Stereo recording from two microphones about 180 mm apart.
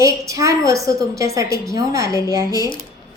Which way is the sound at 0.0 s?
15° right (ahead or behind).